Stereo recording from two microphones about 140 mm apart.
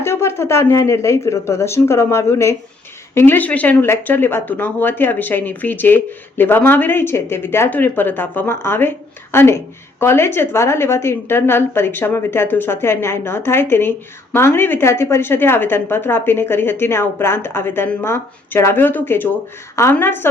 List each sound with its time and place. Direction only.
0.0 s speech: 20° left (ahead or behind)